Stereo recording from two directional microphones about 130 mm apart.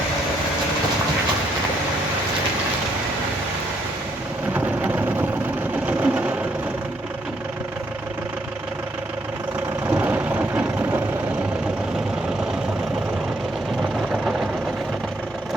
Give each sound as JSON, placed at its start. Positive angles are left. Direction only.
{"t": 4.5, "sound": "thunder", "side_deg": -15}
{"t": 5.8, "sound": "vehicle", "side_deg": -10}
{"t": 9.9, "sound": "vehicle", "side_deg": -15}
{"t": 14.1, "sound": "vehicle", "side_deg": 0}